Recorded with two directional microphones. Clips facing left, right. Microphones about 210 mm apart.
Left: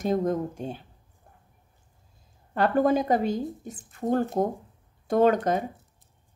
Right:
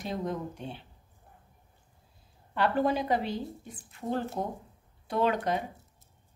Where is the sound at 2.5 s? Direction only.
45° left (ahead or behind).